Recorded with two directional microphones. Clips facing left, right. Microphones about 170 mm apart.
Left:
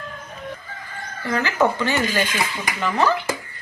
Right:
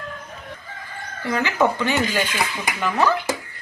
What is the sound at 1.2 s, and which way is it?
Speech, 20° right (ahead or behind).